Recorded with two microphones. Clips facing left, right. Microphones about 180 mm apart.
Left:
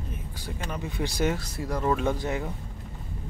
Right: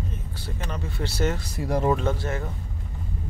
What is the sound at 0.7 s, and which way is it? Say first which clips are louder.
Speech: left 1 dB; 15° left (ahead or behind).